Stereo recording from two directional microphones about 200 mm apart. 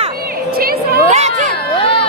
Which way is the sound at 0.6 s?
50° right (ahead or behind).